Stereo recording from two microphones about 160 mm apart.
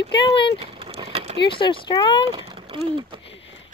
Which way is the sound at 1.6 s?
30° left (ahead or behind).